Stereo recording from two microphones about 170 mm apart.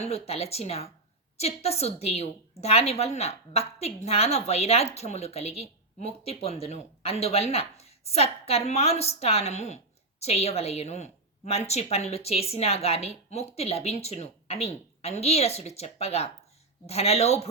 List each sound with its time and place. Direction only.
0.0 s a woman's voice: 40° left (ahead or behind)